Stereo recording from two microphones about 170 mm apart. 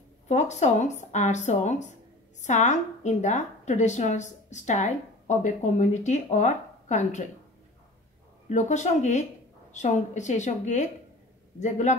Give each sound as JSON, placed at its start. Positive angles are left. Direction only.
{"t": 0.3, "sound": "a woman's voice", "side_deg": 45}
{"t": 8.5, "sound": "a woman's voice", "side_deg": 45}